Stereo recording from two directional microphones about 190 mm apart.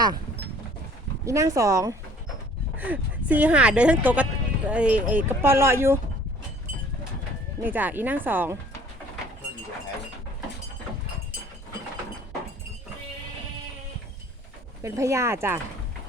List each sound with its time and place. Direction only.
1.2 s speech: 15° right (ahead or behind)
7.6 s speech: 10° right (ahead or behind)
14.8 s speech: 15° right (ahead or behind)